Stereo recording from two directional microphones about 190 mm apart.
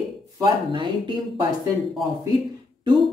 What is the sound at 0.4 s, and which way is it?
Speech, 25° right (ahead or behind).